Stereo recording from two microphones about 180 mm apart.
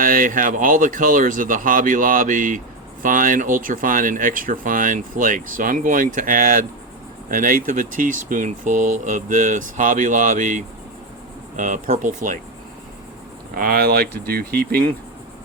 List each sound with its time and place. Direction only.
0.0 s speech: 50° right (ahead or behind)
13.6 s speech: 55° right (ahead or behind)